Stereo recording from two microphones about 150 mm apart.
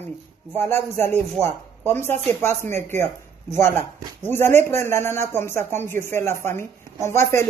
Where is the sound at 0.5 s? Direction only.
15° left (ahead or behind).